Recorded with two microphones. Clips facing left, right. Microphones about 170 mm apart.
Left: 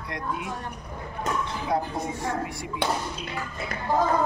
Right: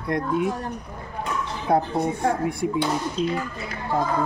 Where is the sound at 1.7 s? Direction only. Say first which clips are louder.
Right 7 dB; 50° right (ahead or behind).